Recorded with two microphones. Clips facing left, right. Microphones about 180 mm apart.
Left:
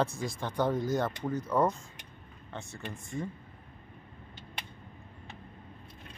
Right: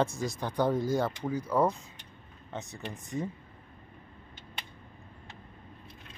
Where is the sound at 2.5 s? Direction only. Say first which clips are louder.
Right 2 dB; 20° right (ahead or behind).